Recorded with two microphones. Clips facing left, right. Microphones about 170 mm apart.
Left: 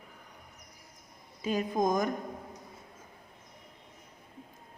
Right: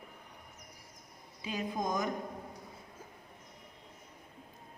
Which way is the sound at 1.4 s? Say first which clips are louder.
Left 7 dB; 45° left (ahead or behind).